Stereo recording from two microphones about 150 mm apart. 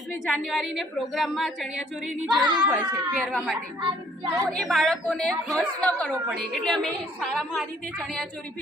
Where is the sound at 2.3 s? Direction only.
30° right (ahead or behind).